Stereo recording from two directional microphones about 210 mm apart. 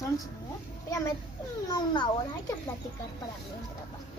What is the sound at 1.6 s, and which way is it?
Speech, 20° left (ahead or behind).